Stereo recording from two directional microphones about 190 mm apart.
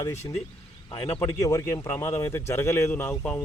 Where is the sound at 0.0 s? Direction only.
20° left (ahead or behind).